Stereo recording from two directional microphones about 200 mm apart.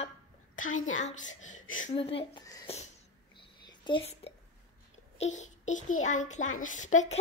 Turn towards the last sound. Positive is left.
turn(degrees=35)  # may be behind; listen again after turning